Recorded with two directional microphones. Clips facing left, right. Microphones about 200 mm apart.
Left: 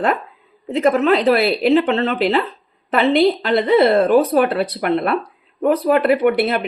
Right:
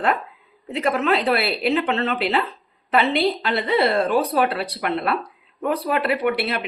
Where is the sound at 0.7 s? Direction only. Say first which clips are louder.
Left 6 dB; 45° left (ahead or behind).